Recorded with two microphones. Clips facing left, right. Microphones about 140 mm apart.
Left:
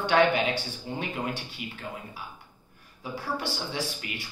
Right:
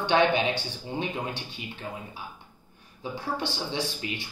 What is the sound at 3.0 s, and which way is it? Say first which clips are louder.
Speech: right 1 dB; 25° right (ahead or behind).